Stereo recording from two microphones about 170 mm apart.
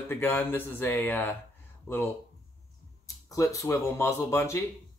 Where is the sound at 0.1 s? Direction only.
10° left (ahead or behind).